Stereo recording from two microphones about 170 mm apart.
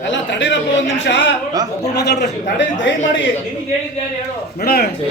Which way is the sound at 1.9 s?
75° left (ahead or behind).